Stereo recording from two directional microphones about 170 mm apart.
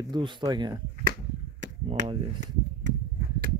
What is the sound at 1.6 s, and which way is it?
Chop, 45° right (ahead or behind).